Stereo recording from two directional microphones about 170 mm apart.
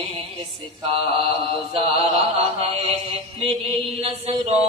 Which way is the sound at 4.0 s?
35° right (ahead or behind).